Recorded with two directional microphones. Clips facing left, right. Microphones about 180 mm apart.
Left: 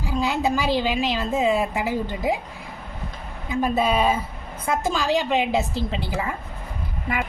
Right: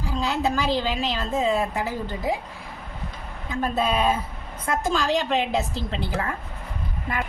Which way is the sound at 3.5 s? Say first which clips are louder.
Left 3 dB; 5° left (ahead or behind).